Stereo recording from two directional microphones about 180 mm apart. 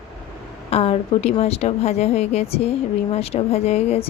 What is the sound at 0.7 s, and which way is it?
A woman's voice, 35° left (ahead or behind).